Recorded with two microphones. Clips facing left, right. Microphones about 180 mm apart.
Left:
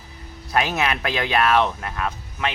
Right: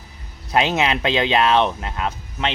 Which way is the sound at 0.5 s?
20° right (ahead or behind).